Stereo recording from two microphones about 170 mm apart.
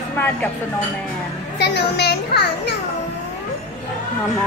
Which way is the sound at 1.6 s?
75° left (ahead or behind).